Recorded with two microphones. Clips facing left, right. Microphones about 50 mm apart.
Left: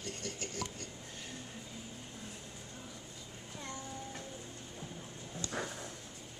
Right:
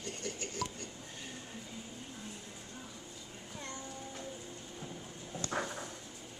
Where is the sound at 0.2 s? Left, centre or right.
Centre.